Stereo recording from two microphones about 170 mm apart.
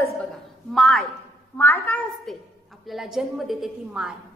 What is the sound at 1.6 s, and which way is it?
A woman's voice, 10° left (ahead or behind).